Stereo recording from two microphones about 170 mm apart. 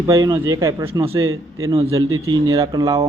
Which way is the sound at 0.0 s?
20° right (ahead or behind).